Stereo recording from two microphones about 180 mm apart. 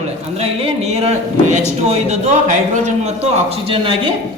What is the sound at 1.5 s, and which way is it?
Speech, 40° right (ahead or behind).